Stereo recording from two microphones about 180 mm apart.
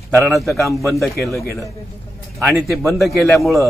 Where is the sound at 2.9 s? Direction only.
Centre (ahead or behind).